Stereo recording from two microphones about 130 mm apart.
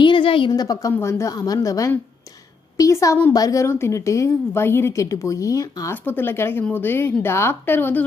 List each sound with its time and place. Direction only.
0.0 s a woman's voice: 40° left (ahead or behind); by 8.0 s 15° left (ahead or behind)